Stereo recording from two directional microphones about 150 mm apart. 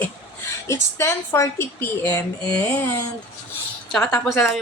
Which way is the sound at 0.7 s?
15° left (ahead or behind).